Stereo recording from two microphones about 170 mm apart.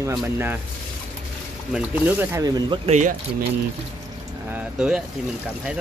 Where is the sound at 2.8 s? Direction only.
40° right (ahead or behind).